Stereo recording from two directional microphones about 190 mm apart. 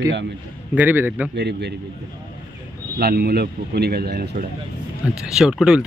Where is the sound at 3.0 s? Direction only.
55° right (ahead or behind).